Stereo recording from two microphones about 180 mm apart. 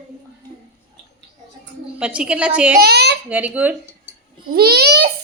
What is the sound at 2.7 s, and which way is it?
Speech, 60° right (ahead or behind).